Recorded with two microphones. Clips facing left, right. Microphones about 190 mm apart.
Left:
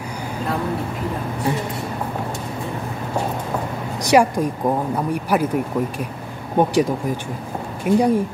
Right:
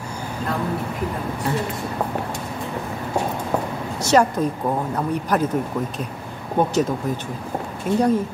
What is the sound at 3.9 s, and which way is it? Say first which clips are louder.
A woman's voice: left 2 dB; 15° left (ahead or behind).